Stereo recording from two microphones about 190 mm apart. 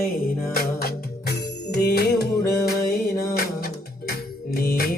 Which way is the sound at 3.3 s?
50° left (ahead or behind).